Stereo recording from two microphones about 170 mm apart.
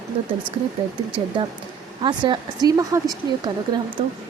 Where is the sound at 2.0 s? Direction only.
25° right (ahead or behind).